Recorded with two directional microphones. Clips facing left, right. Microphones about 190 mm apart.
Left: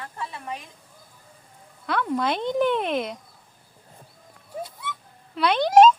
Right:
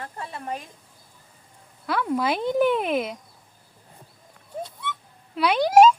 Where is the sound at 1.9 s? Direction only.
5° right (ahead or behind).